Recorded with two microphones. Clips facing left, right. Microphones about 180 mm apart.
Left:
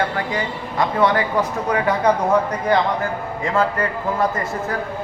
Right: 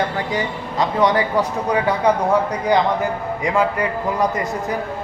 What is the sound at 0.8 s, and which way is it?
A man's voice, 15° right (ahead or behind).